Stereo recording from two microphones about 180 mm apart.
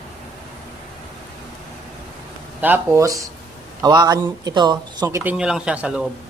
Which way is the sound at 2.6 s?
15° right (ahead or behind).